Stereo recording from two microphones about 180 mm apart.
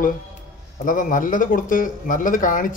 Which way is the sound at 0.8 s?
50° left (ahead or behind).